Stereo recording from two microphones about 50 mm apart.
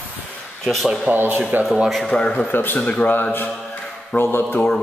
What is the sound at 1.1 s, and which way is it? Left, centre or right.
Speech, right.